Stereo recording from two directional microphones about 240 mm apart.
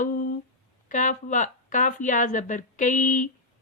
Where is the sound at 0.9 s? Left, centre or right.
Left.